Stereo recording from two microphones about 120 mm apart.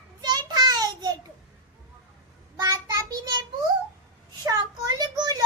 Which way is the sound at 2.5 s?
30° right (ahead or behind).